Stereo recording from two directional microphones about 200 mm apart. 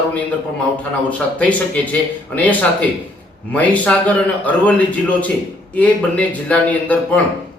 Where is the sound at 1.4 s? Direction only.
5° left (ahead or behind).